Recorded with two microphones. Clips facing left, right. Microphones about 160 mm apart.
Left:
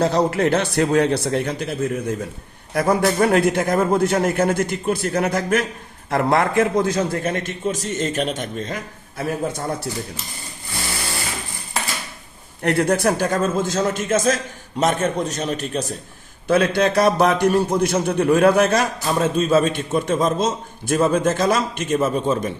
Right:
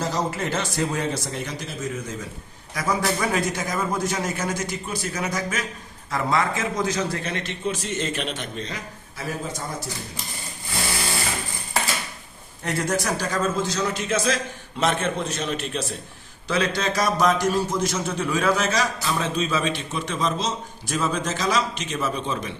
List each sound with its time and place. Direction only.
0.0 s a man's voice: 65° left (ahead or behind)
12.6 s a man's voice: 60° left (ahead or behind); by 16.0 s 45° left (ahead or behind)
16.5 s a man's voice: 55° left (ahead or behind)